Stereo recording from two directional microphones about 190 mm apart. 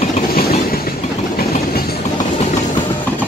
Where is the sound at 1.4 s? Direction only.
55° left (ahead or behind).